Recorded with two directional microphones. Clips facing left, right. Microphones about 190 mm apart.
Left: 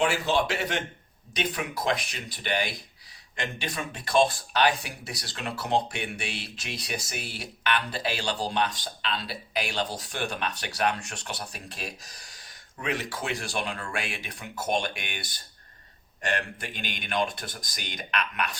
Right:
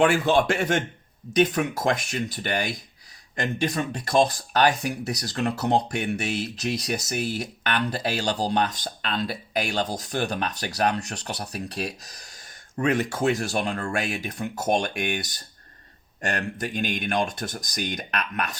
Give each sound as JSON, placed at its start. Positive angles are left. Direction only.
{"t": 0.0, "sound": "speech", "side_deg": -55}